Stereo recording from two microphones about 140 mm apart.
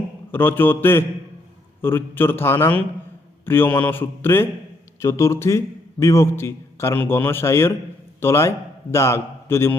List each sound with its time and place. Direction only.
0.3 s a man's voice: 15° left (ahead or behind)